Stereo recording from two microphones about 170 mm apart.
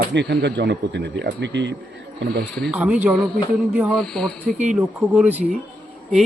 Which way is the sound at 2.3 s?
70° right (ahead or behind).